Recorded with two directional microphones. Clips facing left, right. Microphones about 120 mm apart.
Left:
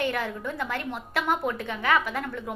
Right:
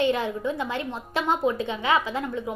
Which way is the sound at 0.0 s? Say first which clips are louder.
Right 5 dB; 20° right (ahead or behind).